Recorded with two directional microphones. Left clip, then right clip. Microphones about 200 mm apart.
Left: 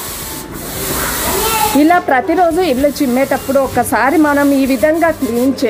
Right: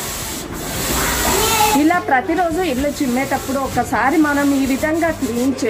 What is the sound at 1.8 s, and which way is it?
Speech, 45° left (ahead or behind).